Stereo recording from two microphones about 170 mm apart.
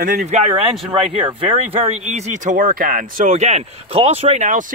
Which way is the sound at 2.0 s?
45° right (ahead or behind).